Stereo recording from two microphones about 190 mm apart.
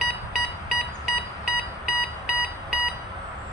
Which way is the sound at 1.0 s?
5° right (ahead or behind).